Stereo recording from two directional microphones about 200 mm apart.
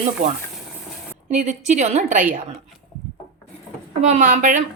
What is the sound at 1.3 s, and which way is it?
A woman's voice, 35° right (ahead or behind).